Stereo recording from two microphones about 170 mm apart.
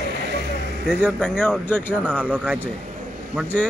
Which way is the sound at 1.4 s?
10° left (ahead or behind).